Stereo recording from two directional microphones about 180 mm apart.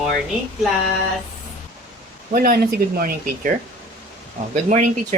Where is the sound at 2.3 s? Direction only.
55° right (ahead or behind).